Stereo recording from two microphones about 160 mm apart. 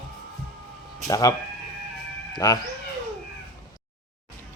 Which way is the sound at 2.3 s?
25° left (ahead or behind).